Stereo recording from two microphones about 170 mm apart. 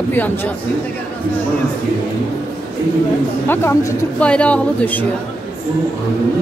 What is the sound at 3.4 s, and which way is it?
Speech, 15° left (ahead or behind).